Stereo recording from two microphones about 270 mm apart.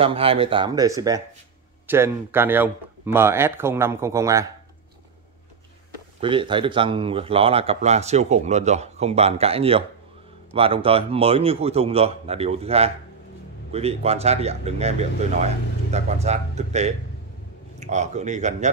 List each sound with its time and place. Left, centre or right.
0.0 s speech: right
6.2 s speech: centre